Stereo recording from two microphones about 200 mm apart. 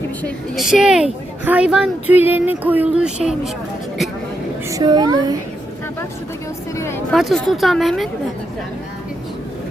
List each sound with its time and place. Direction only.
0.2 s speech: 5° left (ahead or behind)
4.7 s a woman's voice: 20° right (ahead or behind)
6.7 s a sound: 15° left (ahead or behind)
7.1 s speech: centre (ahead or behind)